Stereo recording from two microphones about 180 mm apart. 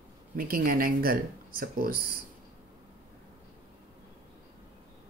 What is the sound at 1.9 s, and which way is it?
Speech, 50° left (ahead or behind).